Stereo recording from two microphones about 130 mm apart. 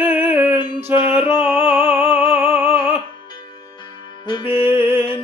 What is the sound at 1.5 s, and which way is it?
Music, 15° right (ahead or behind).